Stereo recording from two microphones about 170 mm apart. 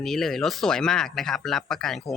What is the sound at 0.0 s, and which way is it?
Speech, centre (ahead or behind).